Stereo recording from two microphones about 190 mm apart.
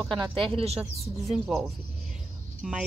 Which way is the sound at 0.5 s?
30° right (ahead or behind).